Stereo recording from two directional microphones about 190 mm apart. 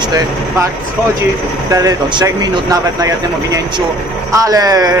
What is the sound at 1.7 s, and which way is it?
Speech, 20° right (ahead or behind).